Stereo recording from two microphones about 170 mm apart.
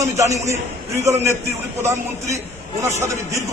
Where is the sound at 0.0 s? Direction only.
20° right (ahead or behind).